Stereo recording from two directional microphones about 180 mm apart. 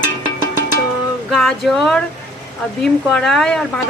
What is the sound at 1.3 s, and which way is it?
A woman's voice, centre (ahead or behind).